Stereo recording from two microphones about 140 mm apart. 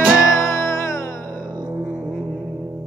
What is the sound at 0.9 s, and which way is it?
Music, 20° left (ahead or behind).